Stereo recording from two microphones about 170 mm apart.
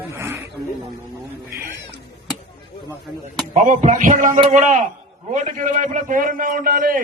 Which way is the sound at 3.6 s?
45° right (ahead or behind).